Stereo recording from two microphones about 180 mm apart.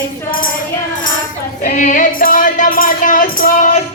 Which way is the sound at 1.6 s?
45° left (ahead or behind).